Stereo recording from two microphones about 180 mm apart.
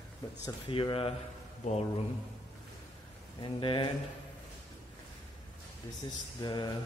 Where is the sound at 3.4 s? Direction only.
25° left (ahead or behind).